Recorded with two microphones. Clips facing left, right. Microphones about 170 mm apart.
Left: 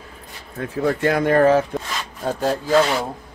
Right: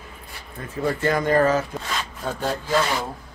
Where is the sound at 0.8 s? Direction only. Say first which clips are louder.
Left 3 dB; 70° left (ahead or behind).